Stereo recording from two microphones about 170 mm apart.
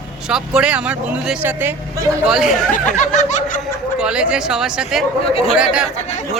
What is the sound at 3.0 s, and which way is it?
Snicker, 45° left (ahead or behind).